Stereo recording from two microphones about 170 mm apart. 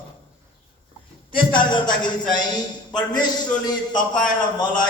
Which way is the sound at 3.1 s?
25° left (ahead or behind).